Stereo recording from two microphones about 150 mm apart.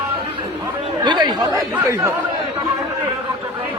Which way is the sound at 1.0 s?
30° right (ahead or behind).